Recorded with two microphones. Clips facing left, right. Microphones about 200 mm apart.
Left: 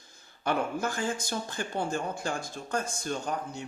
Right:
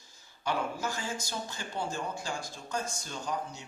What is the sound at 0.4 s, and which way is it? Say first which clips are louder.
Speech: left 4 dB; 55° left (ahead or behind).